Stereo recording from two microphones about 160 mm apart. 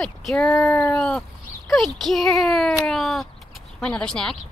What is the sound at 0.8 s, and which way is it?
Speech, 5° left (ahead or behind).